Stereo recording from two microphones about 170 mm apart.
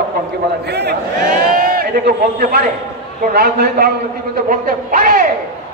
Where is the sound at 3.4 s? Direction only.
65° right (ahead or behind).